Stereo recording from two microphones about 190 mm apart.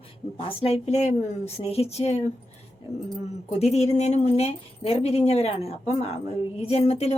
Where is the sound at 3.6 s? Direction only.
35° left (ahead or behind).